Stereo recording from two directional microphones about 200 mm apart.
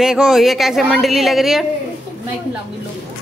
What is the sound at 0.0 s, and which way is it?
A woman's voice, 5° right (ahead or behind).